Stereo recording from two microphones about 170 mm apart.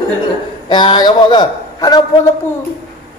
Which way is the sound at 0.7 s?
25° left (ahead or behind).